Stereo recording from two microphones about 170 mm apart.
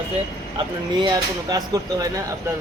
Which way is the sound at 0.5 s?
25° right (ahead or behind).